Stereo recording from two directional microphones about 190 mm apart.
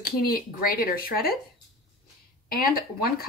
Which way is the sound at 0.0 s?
50° left (ahead or behind).